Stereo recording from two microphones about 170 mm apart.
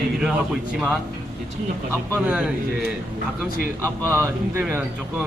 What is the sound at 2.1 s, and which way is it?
Speech, 10° right (ahead or behind).